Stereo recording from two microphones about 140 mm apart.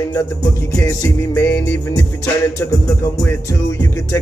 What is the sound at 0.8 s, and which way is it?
Music, 20° left (ahead or behind).